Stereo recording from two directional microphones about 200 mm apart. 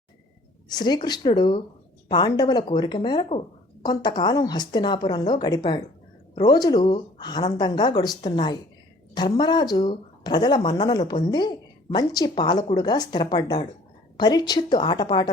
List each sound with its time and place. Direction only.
0.7 s a woman's voice: 20° left (ahead or behind)